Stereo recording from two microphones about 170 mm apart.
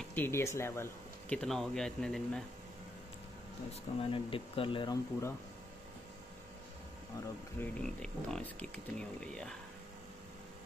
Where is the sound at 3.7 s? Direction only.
30° left (ahead or behind).